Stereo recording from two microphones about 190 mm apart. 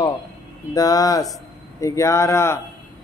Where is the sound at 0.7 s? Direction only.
20° left (ahead or behind).